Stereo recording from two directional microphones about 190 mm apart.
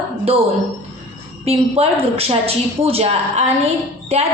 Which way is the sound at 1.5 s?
30° right (ahead or behind).